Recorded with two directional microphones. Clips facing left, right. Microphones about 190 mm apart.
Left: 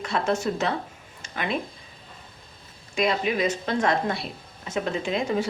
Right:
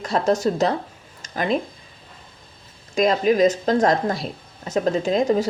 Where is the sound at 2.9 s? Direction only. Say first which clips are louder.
Right 6 dB; 40° right (ahead or behind).